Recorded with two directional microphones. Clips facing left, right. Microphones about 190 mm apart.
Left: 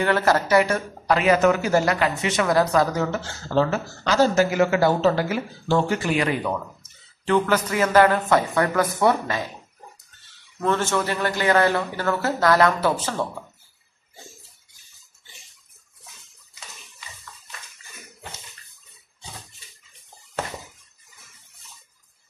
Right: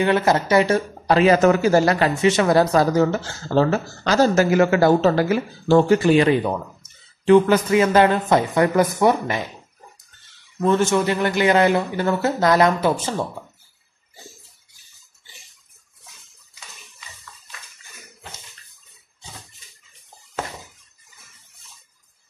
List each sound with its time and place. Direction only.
0.0 s speech: 20° right (ahead or behind); by 5.2 s 45° right (ahead or behind)
5.7 s a man's voice: 35° right (ahead or behind)
7.2 s a man's voice: 15° right (ahead or behind)
10.6 s a man's voice: 15° right (ahead or behind)